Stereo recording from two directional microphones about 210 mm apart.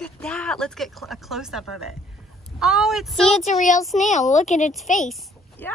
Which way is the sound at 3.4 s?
35° left (ahead or behind).